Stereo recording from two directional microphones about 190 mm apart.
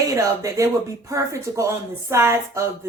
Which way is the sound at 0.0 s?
15° right (ahead or behind).